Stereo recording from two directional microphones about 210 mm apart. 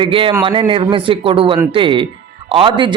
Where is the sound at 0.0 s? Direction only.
25° right (ahead or behind).